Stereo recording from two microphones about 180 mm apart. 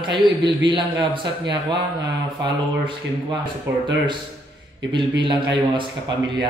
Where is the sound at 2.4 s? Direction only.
25° right (ahead or behind).